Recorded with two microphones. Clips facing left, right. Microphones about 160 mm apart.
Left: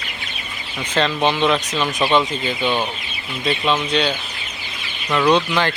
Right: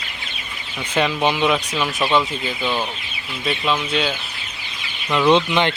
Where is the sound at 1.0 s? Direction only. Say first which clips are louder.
Left 1 dB; 10° right (ahead or behind).